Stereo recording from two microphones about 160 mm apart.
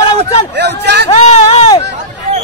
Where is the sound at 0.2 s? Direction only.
40° left (ahead or behind).